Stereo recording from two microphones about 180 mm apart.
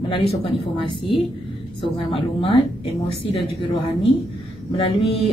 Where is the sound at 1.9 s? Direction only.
30° left (ahead or behind).